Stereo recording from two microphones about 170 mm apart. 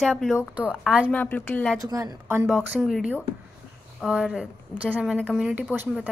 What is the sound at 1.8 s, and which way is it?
Speech, 20° right (ahead or behind).